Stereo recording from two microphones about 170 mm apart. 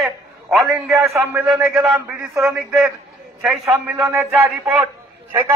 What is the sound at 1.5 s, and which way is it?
Speech, 5° right (ahead or behind).